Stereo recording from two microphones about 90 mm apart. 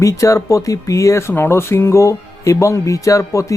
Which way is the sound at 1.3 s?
25° left (ahead or behind).